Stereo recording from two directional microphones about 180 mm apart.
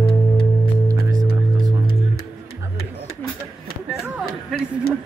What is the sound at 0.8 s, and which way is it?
Music, 20° right (ahead or behind).